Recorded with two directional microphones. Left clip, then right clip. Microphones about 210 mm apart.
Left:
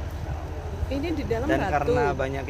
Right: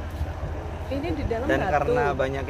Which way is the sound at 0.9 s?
45° left (ahead or behind).